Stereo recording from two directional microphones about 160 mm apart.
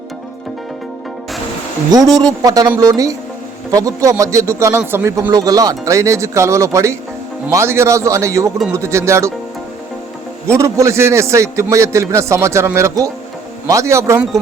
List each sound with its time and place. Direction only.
1.9 s a man's voice: 25° right (ahead or behind)
10.5 s a man's voice: 20° right (ahead or behind)